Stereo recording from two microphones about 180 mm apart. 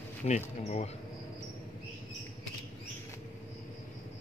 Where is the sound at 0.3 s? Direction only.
40° left (ahead or behind).